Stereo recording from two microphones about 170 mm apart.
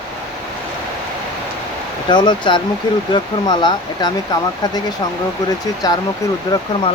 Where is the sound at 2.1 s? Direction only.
25° left (ahead or behind).